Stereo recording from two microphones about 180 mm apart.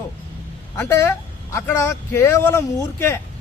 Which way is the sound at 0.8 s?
15° left (ahead or behind).